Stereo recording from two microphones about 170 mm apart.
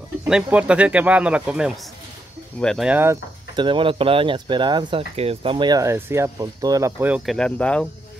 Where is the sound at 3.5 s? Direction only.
30° right (ahead or behind); by 7.3 s 10° right (ahead or behind).